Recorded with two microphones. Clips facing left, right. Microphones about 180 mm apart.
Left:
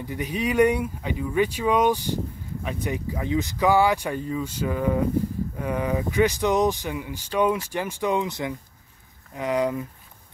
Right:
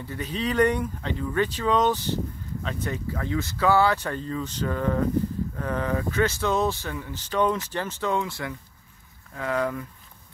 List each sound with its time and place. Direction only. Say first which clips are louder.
0.0 s speech: left 2 dB; 15° left (ahead or behind)